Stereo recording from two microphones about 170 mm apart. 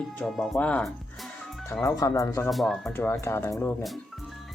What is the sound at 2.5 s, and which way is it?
Speech, centre (ahead or behind).